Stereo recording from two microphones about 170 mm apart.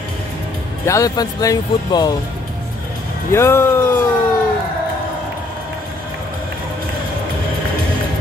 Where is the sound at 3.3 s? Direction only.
15° left (ahead or behind).